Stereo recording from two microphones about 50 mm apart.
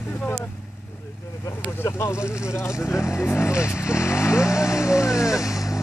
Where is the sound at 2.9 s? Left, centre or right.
Left.